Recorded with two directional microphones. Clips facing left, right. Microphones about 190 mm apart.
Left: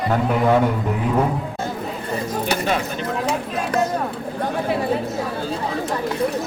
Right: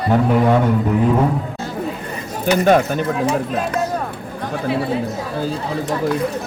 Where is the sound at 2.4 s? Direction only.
50° right (ahead or behind).